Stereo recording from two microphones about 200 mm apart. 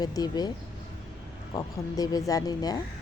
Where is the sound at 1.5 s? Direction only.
20° left (ahead or behind).